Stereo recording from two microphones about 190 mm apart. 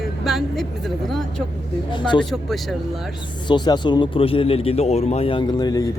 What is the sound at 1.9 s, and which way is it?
Speech, 25° left (ahead or behind).